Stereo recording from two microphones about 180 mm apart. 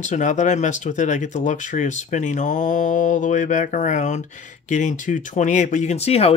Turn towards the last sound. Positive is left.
turn(degrees=35)  # may be behind; listen again after turning